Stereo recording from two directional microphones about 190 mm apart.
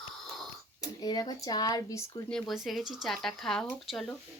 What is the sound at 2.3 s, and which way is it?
Speech, centre (ahead or behind).